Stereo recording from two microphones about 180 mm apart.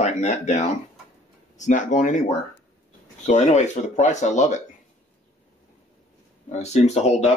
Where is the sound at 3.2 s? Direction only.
40° left (ahead or behind).